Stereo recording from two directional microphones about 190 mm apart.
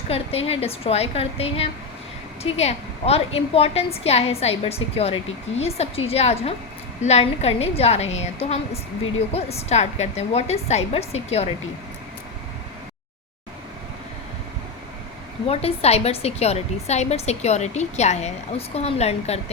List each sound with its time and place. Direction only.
0.1 s a woman's voice: 30° left (ahead or behind)
15.4 s a woman's voice: 35° left (ahead or behind)